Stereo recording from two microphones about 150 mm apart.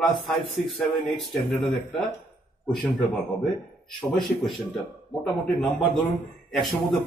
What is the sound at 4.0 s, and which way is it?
A man's voice, 5° left (ahead or behind).